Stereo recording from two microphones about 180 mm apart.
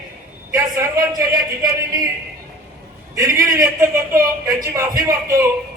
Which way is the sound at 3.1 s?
15° right (ahead or behind).